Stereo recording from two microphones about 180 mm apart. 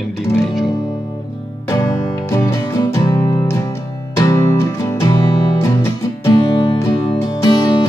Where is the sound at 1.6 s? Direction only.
20° left (ahead or behind).